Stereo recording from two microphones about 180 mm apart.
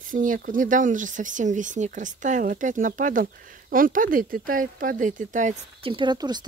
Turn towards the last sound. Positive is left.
turn(degrees=-25)  # may be behind; listen again after turning